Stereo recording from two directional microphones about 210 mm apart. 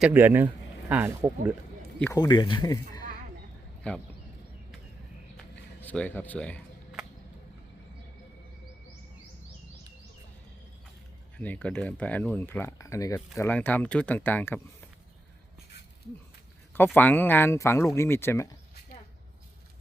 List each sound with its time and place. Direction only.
0.0 s speech: 10° right (ahead or behind)
2.1 s speech: 20° left (ahead or behind)
5.8 s speech: 5° left (ahead or behind)
11.3 s speech: 5° left (ahead or behind)
16.7 s speech: 10° left (ahead or behind)